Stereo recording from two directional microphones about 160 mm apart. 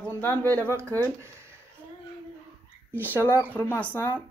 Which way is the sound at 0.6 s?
15° right (ahead or behind).